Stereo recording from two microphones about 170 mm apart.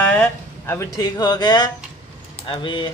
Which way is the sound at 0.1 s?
15° left (ahead or behind).